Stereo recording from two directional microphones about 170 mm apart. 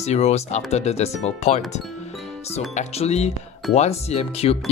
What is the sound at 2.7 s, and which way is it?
Speech, 40° left (ahead or behind).